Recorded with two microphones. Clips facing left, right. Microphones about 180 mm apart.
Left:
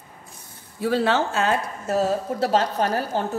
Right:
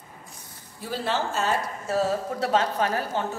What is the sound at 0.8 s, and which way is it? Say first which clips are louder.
Speech: left 7 dB; 70° left (ahead or behind).